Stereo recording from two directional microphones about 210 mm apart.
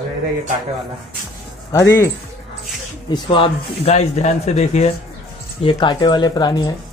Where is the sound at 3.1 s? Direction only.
25° left (ahead or behind).